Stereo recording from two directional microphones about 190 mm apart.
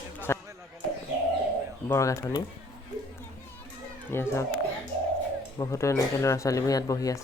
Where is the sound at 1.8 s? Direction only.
15° left (ahead or behind).